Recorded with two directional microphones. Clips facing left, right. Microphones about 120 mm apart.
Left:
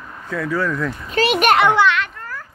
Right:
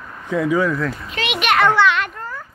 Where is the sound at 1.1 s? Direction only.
40° left (ahead or behind).